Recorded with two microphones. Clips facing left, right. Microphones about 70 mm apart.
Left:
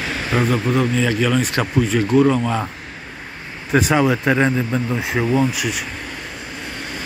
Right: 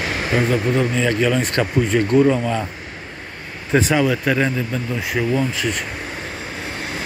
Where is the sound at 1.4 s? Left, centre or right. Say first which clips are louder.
Right 1 dB; centre.